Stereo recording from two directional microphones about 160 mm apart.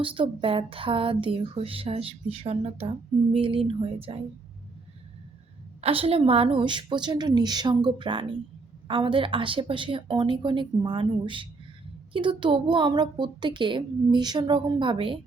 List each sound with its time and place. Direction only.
0.0 s speech: 35° right (ahead or behind)
5.8 s a woman's voice: 35° right (ahead or behind)